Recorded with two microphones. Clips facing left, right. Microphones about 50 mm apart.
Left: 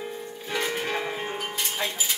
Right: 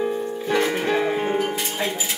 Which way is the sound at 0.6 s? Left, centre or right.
Centre.